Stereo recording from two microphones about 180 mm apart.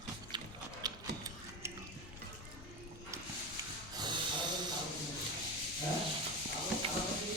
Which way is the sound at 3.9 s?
25° right (ahead or behind).